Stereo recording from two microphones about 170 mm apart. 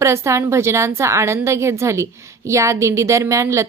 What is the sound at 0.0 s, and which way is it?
A woman's voice, 15° right (ahead or behind).